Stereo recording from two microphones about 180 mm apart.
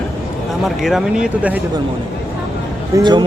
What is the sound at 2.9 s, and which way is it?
Speech, 25° right (ahead or behind).